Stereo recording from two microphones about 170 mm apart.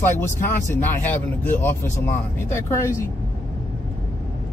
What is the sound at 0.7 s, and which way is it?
Speech, 10° left (ahead or behind).